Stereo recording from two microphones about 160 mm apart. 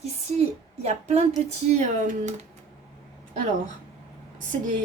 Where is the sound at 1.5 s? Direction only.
50° right (ahead or behind).